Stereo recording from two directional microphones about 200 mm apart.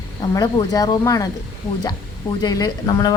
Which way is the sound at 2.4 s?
20° left (ahead or behind).